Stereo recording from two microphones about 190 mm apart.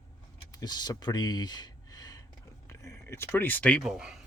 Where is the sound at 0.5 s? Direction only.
20° left (ahead or behind).